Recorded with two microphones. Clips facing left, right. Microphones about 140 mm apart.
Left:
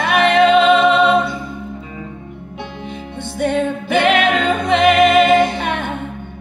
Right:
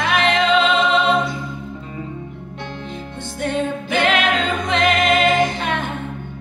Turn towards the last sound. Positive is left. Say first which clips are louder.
# left 2 dB
turn(degrees=60)  # may be behind; listen again after turning